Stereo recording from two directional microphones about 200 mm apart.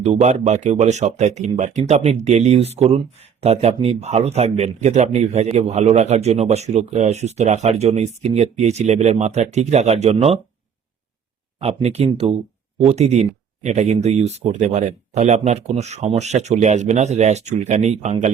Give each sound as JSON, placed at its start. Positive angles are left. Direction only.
{"t": 0.0, "sound": "speech", "side_deg": -35}
{"t": 11.6, "sound": "speech", "side_deg": -30}